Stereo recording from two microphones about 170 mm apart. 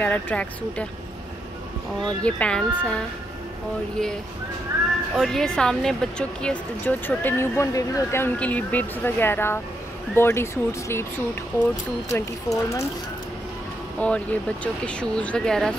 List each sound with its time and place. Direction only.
0.0 s speech: 10° left (ahead or behind)
2.0 s speech: 5° left (ahead or behind)
5.1 s speech: centre (ahead or behind)
12.1 s speech: 20° left (ahead or behind)
13.9 s speech: 5° left (ahead or behind)